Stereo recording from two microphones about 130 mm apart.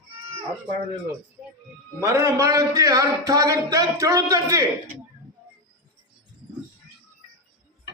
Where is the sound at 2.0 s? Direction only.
25° right (ahead or behind).